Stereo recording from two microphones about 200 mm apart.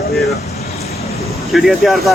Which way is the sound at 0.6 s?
30° left (ahead or behind).